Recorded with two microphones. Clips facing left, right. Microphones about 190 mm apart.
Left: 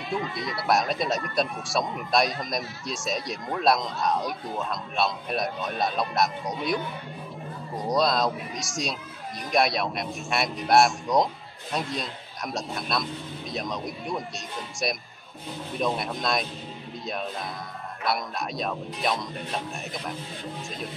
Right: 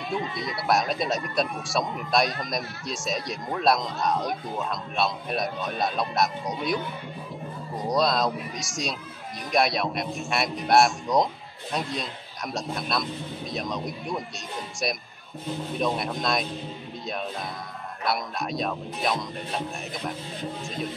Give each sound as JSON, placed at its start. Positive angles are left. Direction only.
{"t": 0.3, "sound": "a man's voice", "side_deg": 0}
{"t": 15.8, "sound": "a man's voice", "side_deg": 0}
{"t": 18.0, "sound": "a man's voice", "side_deg": 0}